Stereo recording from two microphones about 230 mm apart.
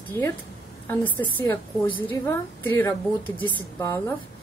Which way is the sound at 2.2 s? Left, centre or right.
Centre.